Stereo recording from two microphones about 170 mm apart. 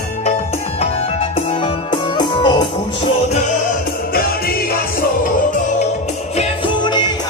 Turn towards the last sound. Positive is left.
turn(degrees=25)  # may be behind; listen again after turning